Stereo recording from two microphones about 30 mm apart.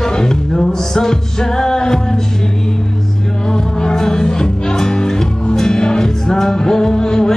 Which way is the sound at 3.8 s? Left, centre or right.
Centre.